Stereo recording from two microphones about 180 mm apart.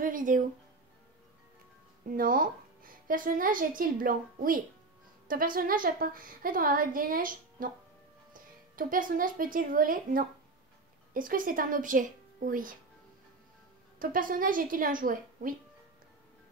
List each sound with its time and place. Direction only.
0.0 s speech: 50° right (ahead or behind)
2.0 s a woman's voice: 50° right (ahead or behind)
8.7 s a woman's voice: 50° right (ahead or behind)
13.9 s a woman's voice: 50° right (ahead or behind)